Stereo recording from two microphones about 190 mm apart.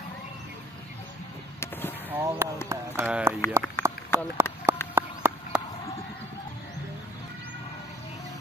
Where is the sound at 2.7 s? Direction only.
10° right (ahead or behind).